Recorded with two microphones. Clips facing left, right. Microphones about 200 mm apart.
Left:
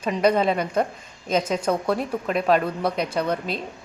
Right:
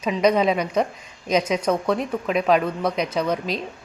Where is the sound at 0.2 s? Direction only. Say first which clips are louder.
Right 1 dB; 5° left (ahead or behind).